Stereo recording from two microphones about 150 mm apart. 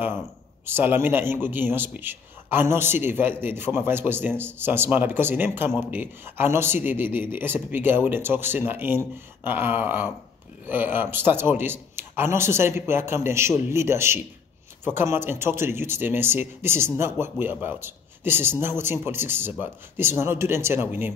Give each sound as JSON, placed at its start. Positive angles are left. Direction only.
{"t": 0.7, "sound": "speech", "side_deg": -15}